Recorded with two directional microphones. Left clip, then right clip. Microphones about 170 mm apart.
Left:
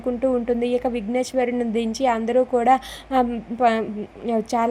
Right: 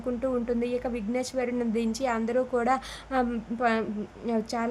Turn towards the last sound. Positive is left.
turn(degrees=20)  # may be behind; listen again after turning